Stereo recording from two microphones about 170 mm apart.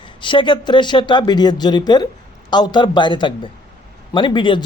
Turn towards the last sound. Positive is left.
turn(degrees=25)  # may be behind; listen again after turning